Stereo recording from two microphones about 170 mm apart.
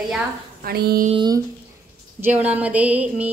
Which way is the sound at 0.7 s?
65° right (ahead or behind).